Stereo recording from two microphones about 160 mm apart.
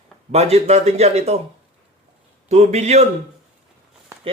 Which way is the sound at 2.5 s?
45° right (ahead or behind).